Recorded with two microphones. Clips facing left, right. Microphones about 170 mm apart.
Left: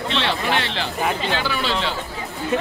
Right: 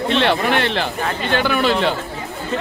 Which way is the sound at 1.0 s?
10° left (ahead or behind).